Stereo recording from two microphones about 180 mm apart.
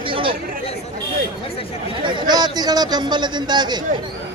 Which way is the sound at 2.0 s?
25° right (ahead or behind).